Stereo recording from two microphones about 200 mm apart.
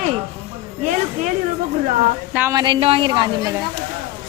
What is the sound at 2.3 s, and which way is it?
A woman's voice, 10° right (ahead or behind).